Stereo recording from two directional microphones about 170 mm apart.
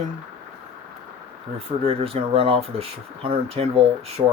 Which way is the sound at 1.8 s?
35° right (ahead or behind).